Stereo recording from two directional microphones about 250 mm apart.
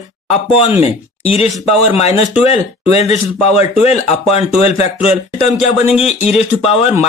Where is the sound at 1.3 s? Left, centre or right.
Left.